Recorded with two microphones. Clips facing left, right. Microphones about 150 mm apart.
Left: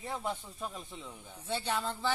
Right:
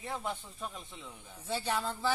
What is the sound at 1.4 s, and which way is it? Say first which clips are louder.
Speech: even; 10° right (ahead or behind).